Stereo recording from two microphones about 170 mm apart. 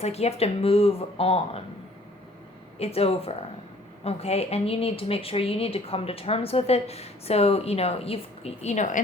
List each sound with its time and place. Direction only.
0.0 s speech: 40° left (ahead or behind)
2.7 s speech: 35° left (ahead or behind)